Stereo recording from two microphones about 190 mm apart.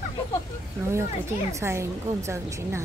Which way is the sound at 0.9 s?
15° right (ahead or behind).